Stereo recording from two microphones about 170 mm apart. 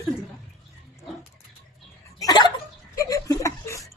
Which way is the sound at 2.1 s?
25° left (ahead or behind).